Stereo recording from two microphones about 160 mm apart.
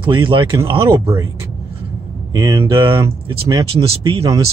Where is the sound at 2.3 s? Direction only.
20° right (ahead or behind).